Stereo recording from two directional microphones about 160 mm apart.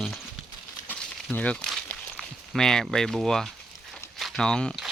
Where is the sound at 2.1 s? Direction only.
Centre (ahead or behind).